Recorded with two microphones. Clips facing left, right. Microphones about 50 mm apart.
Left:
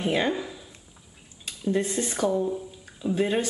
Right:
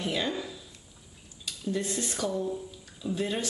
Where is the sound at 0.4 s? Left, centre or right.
Left.